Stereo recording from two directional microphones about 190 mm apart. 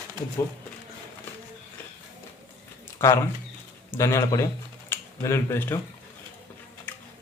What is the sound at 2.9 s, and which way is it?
A man's voice, 15° left (ahead or behind).